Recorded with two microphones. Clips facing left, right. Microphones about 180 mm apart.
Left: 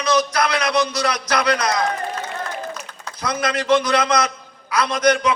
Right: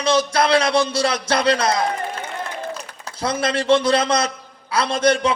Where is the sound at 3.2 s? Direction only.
30° right (ahead or behind).